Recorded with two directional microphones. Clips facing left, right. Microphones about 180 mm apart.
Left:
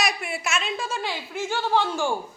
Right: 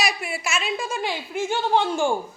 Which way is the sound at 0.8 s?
15° right (ahead or behind).